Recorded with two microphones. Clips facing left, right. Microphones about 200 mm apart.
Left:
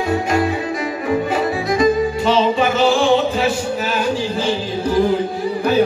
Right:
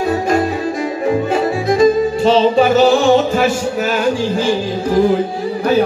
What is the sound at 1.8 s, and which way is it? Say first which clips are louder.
Music: right 4 dB; 30° right (ahead or behind).